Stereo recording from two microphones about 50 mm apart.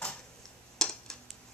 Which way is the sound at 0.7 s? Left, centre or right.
Centre.